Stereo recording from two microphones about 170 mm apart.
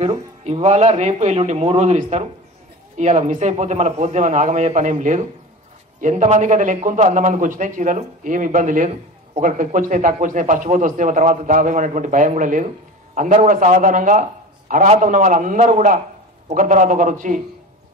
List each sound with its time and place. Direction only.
0.0 s a man's voice: 35° right (ahead or behind)